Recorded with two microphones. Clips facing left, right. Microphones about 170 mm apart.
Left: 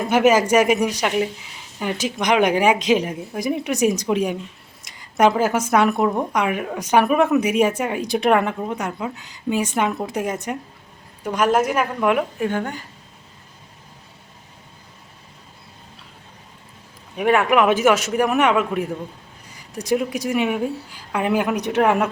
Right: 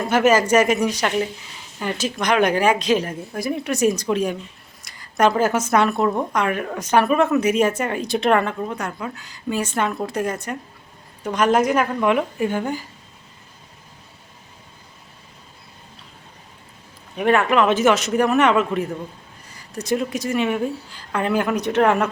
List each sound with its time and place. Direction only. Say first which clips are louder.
0.1 s a woman's voice: left 1 dB; 15° left (ahead or behind)
4.9 s a sound: even; 20° left (ahead or behind)
5.4 s a woman's voice: even; 10° left (ahead or behind)
17.2 s a woman's voice: even; 10° left (ahead or behind)